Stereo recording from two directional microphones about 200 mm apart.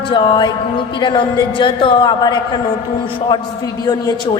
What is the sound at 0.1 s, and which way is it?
A woman's voice, 25° left (ahead or behind).